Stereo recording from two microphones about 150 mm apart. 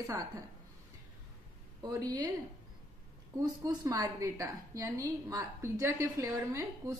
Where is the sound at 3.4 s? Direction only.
25° right (ahead or behind).